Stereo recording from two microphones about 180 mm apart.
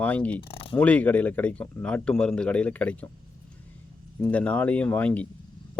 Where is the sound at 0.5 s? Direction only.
30° left (ahead or behind).